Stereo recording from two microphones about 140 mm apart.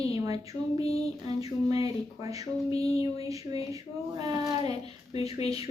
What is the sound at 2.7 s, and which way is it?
Speech, 45° left (ahead or behind).